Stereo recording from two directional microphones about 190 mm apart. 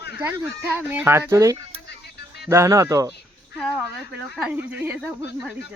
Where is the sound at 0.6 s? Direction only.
10° right (ahead or behind).